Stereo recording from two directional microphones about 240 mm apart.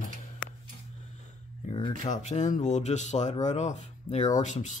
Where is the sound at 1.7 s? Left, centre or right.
Left.